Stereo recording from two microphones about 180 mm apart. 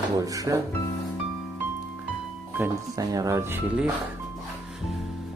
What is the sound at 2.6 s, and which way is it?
Speech, 20° right (ahead or behind).